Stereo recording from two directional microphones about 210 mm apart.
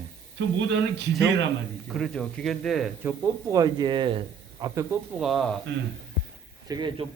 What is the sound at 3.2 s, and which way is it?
A man's voice, 15° right (ahead or behind).